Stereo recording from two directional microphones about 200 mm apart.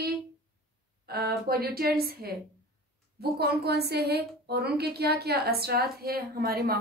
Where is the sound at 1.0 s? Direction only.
50° right (ahead or behind).